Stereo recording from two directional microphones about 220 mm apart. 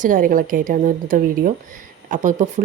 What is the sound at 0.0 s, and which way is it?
A woman's voice, 40° right (ahead or behind).